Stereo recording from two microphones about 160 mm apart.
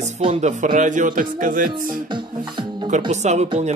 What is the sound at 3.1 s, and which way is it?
Speech, 45° right (ahead or behind).